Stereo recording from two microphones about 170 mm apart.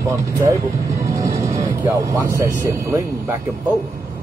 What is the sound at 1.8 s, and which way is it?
Speech, 20° right (ahead or behind).